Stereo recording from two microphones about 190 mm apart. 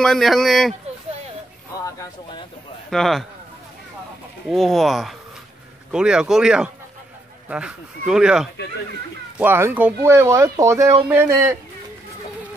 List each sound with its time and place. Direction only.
0.0 s speech: centre (ahead or behind)
1.9 s speech: 15° left (ahead or behind)
2.9 s speech: centre (ahead or behind)
4.5 s speech: centre (ahead or behind)